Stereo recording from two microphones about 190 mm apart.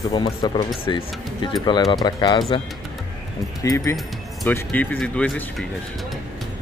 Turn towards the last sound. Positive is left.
turn(degrees=5)  # may be behind; listen again after turning